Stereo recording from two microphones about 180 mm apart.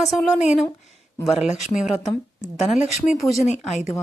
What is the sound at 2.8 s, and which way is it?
Speech, 40° left (ahead or behind).